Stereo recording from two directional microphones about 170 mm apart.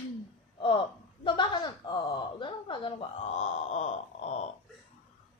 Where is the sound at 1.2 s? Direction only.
25° left (ahead or behind).